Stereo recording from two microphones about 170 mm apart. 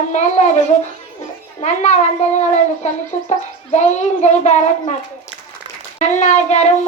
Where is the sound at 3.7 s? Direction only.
45° left (ahead or behind).